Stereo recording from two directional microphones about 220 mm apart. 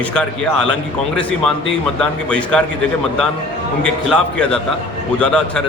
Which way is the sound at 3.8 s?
5° left (ahead or behind).